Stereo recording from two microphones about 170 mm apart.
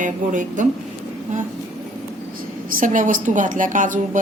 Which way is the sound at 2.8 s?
50° right (ahead or behind).